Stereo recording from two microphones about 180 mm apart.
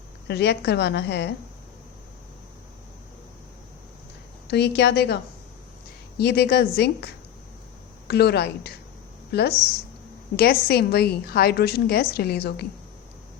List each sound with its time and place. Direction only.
0.3 s a woman's voice: 70° left (ahead or behind)
4.4 s a woman's voice: 70° left (ahead or behind)